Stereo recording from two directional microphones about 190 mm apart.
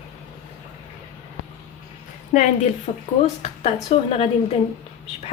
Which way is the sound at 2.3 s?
40° left (ahead or behind).